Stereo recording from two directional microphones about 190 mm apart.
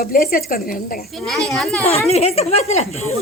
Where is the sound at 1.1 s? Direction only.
5° left (ahead or behind).